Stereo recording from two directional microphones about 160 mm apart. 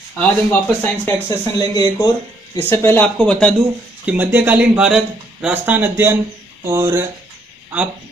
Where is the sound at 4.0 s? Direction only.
10° right (ahead or behind).